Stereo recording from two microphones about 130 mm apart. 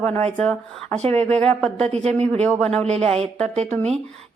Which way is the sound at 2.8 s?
50° right (ahead or behind).